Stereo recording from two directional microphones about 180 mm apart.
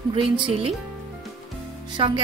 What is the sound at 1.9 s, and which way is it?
Speech, 25° right (ahead or behind).